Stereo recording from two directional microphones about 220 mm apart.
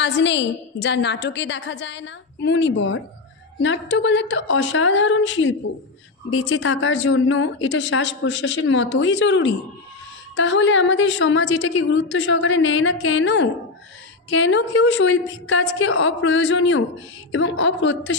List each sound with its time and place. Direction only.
0.0 s a woman's voice: 55° left (ahead or behind)